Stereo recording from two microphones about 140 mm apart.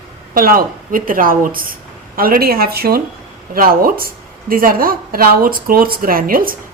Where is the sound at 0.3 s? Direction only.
90° right.